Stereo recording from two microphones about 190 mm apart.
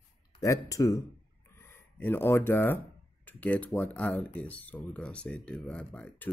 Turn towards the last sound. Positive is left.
turn(degrees=10)  # may be behind; listen again after turning